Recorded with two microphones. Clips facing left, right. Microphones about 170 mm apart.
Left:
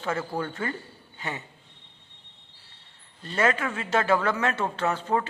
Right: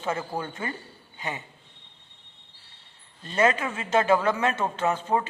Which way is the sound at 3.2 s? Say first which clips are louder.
Right 2 dB; 20° right (ahead or behind).